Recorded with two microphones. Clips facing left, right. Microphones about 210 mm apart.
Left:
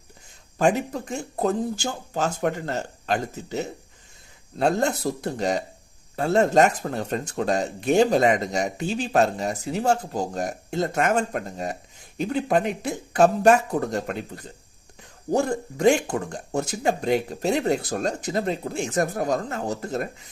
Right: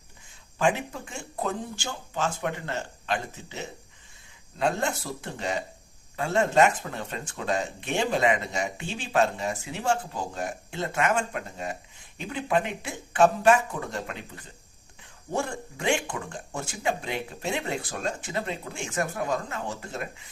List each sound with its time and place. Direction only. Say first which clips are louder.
0.6 s speech: left 4 dB; 40° left (ahead or behind)